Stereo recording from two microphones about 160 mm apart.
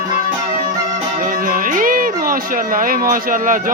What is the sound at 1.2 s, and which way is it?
Music, 55° right (ahead or behind).